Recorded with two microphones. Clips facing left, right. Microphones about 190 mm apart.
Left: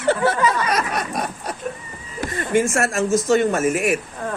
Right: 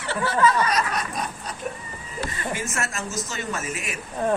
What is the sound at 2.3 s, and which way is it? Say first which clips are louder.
Speech: left 15 dB; 50° left (ahead or behind).